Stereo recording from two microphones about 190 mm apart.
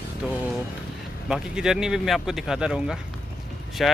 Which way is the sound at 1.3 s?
5° right (ahead or behind).